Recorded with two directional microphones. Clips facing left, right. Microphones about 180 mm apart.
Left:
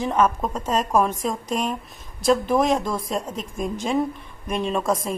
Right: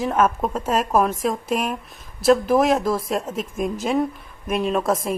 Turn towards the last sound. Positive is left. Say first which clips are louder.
# right 2 dB
turn(degrees=-5)  # may be behind; listen again after turning